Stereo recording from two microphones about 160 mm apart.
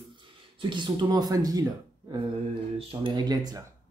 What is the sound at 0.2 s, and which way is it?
Speech, 30° right (ahead or behind).